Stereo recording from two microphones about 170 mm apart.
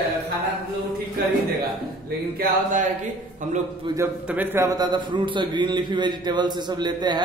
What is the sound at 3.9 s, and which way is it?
Speech, 25° right (ahead or behind).